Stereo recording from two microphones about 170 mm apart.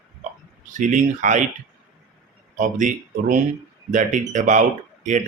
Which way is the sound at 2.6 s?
50° right (ahead or behind).